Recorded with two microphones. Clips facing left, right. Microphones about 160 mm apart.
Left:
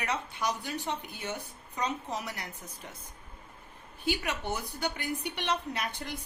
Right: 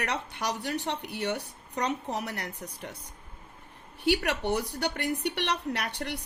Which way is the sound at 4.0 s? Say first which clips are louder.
Right 6 dB; 70° right (ahead or behind).